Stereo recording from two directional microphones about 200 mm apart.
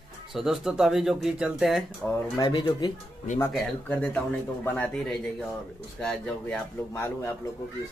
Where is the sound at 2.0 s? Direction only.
20° left (ahead or behind).